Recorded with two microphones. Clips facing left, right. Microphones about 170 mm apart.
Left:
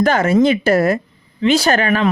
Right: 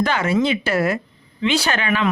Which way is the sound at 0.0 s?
45° left (ahead or behind).